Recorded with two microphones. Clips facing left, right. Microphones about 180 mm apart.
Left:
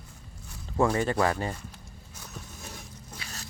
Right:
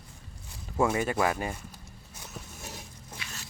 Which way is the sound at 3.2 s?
40° left (ahead or behind).